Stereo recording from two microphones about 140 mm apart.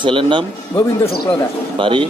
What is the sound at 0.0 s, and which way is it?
Speech, 35° right (ahead or behind).